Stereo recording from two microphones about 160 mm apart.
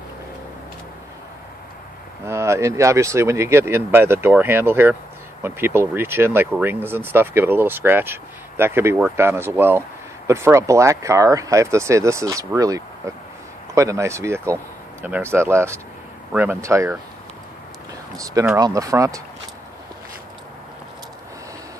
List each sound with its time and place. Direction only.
2.2 s speech: 15° right (ahead or behind)
18.1 s speech: 20° right (ahead or behind)